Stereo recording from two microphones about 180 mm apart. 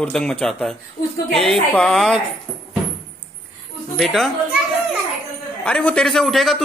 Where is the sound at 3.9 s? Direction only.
Centre (ahead or behind).